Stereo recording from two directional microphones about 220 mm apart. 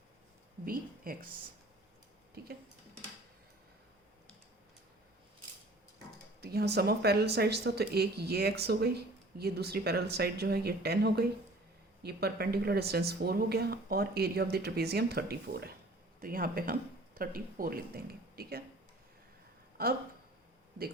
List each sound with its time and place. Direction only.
0.6 s speech: 40° right (ahead or behind)
2.3 s tick-tock: 45° right (ahead or behind)
6.4 s speech: 45° right (ahead or behind)
19.7 s speech: 45° right (ahead or behind)